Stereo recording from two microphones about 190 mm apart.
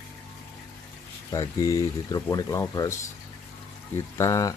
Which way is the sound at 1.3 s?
15° left (ahead or behind).